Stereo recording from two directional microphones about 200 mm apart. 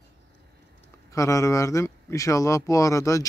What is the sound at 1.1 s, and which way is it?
Speech, 15° left (ahead or behind).